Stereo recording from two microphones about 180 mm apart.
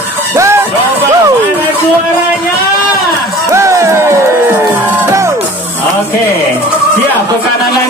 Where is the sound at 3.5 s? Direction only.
15° right (ahead or behind).